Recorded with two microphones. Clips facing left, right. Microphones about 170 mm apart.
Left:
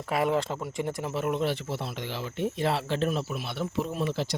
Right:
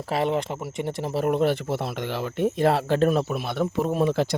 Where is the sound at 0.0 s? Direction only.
30° right (ahead or behind).